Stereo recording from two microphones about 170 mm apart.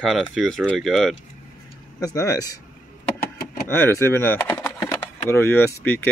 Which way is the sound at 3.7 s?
15° left (ahead or behind).